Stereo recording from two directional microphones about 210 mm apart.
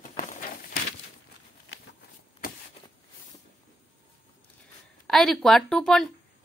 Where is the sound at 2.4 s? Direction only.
45° left (ahead or behind).